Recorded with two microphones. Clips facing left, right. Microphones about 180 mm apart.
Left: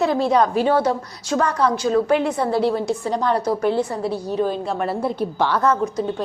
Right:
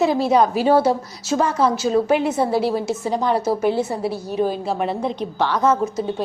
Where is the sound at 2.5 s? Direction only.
5° right (ahead or behind).